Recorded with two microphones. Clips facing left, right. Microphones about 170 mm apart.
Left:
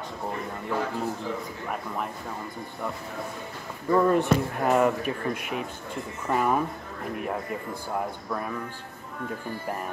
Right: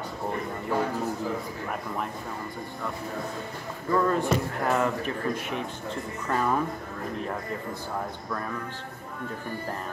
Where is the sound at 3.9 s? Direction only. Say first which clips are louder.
Left 3 dB; 20° left (ahead or behind).